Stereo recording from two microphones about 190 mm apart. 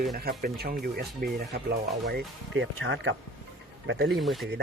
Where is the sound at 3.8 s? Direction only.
70° right (ahead or behind).